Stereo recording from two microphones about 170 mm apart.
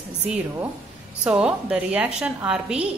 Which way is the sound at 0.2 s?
10° right (ahead or behind).